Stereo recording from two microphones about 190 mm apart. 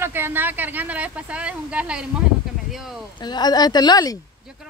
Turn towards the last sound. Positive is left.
turn(degrees=20)  # may be behind; listen again after turning